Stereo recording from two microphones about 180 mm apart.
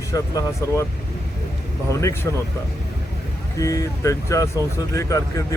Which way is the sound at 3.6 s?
20° left (ahead or behind).